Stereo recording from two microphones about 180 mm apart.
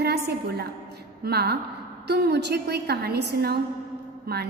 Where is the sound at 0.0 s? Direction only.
65° right (ahead or behind).